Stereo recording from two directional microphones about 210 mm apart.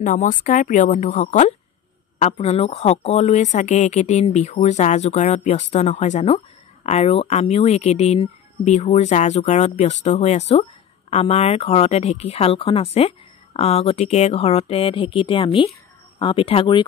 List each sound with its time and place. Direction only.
0.0 s speech: 40° left (ahead or behind)